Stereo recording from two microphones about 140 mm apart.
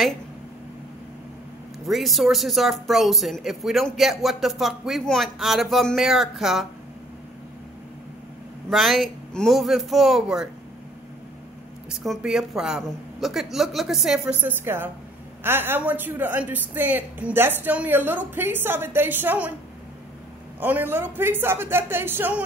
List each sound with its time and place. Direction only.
1.9 s speech: centre (ahead or behind)
8.6 s speech: centre (ahead or behind)
11.9 s speech: centre (ahead or behind)
14.4 s a woman's voice: 15° right (ahead or behind)
20.6 s a woman's voice: 15° right (ahead or behind)